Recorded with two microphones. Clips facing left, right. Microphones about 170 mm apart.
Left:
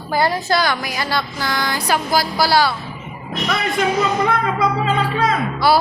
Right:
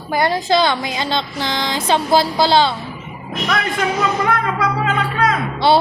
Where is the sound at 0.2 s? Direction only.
20° right (ahead or behind).